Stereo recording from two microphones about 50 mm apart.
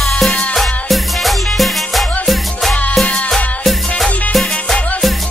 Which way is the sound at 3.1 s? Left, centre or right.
Left.